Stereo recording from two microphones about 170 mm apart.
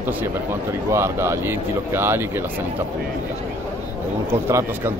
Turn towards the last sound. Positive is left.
turn(degrees=-15)  # may be behind; listen again after turning